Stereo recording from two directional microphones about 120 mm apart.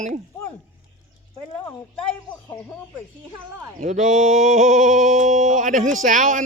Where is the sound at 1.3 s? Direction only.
25° left (ahead or behind).